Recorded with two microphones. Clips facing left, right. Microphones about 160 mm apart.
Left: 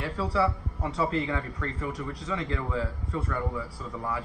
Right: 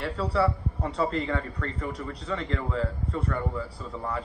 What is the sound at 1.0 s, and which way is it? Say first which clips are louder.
Speech: even; 35° right (ahead or behind).